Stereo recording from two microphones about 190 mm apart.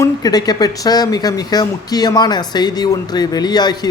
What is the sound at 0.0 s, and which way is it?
Speech, 20° left (ahead or behind).